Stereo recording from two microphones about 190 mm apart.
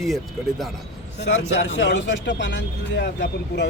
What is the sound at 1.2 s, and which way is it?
Speech, 70° left (ahead or behind).